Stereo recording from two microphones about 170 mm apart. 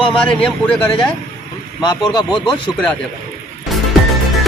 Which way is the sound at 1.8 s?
25° left (ahead or behind).